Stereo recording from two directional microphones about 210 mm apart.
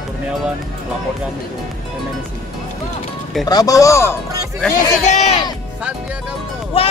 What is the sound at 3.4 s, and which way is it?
A man's voice, 15° left (ahead or behind).